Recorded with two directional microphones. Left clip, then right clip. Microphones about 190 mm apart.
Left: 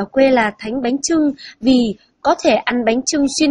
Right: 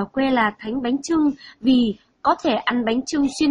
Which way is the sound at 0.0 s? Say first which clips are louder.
Left 7 dB; 15° left (ahead or behind).